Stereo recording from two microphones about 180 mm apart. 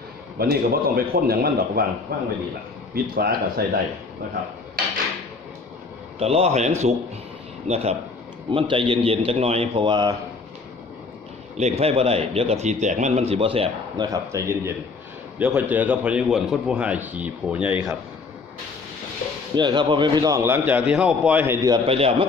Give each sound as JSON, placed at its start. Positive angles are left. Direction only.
{"t": 0.4, "sound": "a man's voice", "side_deg": -55}
{"t": 2.9, "sound": "a man's voice", "side_deg": -55}
{"t": 6.1, "sound": "speech", "side_deg": -35}
{"t": 11.5, "sound": "speech", "side_deg": -35}
{"t": 14.0, "sound": "a man's voice", "side_deg": -15}
{"t": 19.5, "sound": "a man's voice", "side_deg": -25}